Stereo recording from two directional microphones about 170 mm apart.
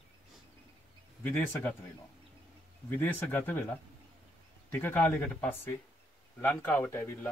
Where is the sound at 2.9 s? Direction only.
10° left (ahead or behind).